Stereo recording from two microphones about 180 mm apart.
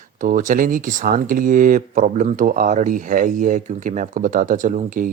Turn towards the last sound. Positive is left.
turn(degrees=-45)  # may be behind; listen again after turning